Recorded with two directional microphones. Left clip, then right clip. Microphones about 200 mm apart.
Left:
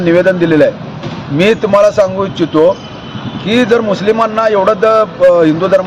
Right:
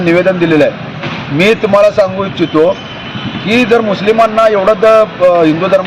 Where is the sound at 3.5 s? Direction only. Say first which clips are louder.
Right 1 dB; 15° left (ahead or behind).